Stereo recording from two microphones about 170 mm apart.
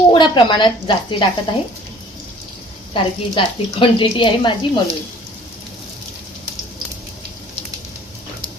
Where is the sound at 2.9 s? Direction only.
30° left (ahead or behind).